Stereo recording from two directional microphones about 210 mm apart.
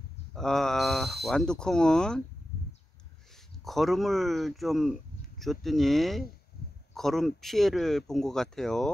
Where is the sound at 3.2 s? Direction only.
Centre (ahead or behind).